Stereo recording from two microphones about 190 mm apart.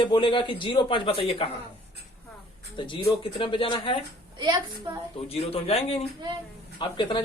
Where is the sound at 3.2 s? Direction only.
25° left (ahead or behind).